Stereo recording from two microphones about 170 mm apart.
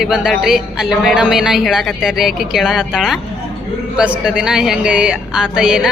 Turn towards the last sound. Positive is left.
turn(degrees=-5)  # may be behind; listen again after turning